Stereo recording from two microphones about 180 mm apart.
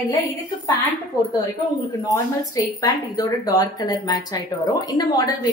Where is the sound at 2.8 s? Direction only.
20° left (ahead or behind).